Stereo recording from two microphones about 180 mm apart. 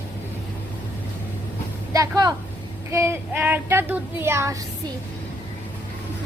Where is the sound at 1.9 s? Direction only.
20° right (ahead or behind).